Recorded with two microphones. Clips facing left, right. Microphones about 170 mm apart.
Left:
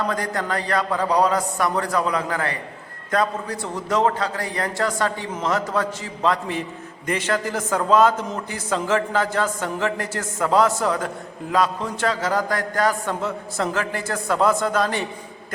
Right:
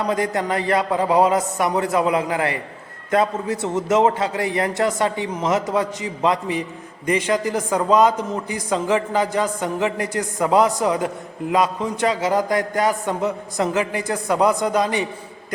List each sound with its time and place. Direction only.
0.1 s a man's voice: 20° right (ahead or behind)